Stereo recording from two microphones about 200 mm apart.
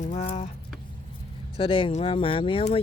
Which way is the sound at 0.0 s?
35° left (ahead or behind).